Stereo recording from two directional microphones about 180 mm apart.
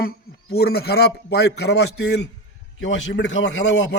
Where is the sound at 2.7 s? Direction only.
90° left; by 3.9 s 75° left (ahead or behind).